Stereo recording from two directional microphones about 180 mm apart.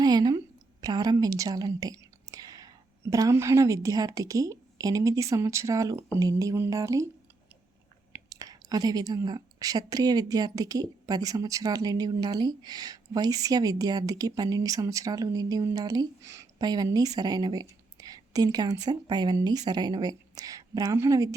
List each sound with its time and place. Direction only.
0.0 s a woman's voice: 20° right (ahead or behind)
8.1 s a woman's voice: 20° right (ahead or behind)